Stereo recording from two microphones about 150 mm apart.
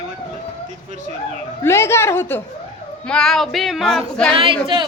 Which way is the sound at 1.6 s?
15° left (ahead or behind).